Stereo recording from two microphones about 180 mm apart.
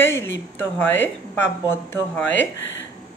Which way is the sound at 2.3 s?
90° left.